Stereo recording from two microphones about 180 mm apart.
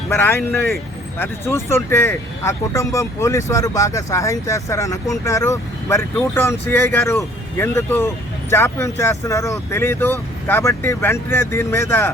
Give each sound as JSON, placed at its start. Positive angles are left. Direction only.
{"t": 1.2, "sound": "speech", "side_deg": 15}